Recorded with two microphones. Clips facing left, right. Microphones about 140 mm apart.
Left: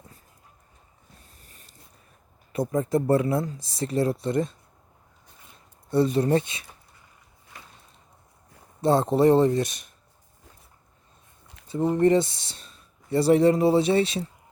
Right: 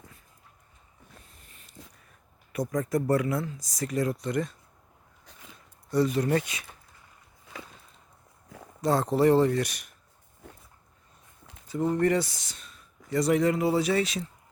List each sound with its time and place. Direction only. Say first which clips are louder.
1.8 s a sound: right 12 dB; 90° right
2.5 s speech: left 4 dB; 25° left (ahead or behind)
5.2 s a sound: right 4 dB; 90° right
5.9 s speech: left 3 dB; 25° left (ahead or behind)
8.8 s speech: left 3 dB; 25° left (ahead or behind)
11.7 s speech: left 4 dB; 25° left (ahead or behind)